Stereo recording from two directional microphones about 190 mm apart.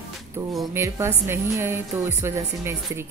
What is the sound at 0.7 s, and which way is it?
Speech, 15° right (ahead or behind).